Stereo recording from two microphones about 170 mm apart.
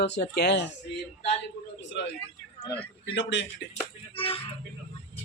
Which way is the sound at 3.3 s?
90° left.